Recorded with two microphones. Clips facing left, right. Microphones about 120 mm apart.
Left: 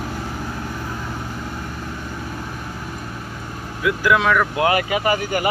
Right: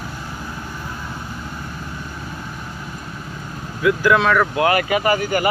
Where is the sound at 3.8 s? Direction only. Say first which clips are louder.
Right 2 dB; 10° left (ahead or behind).